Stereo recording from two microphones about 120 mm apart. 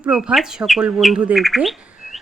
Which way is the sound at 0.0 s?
10° right (ahead or behind).